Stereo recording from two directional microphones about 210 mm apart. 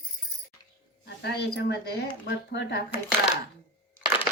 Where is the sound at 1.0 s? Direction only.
50° left (ahead or behind).